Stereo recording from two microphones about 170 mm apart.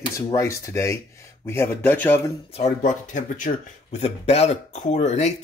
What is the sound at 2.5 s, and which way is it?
Speech, 45° left (ahead or behind).